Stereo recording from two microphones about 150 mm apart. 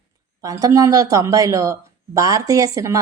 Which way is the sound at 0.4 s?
20° right (ahead or behind).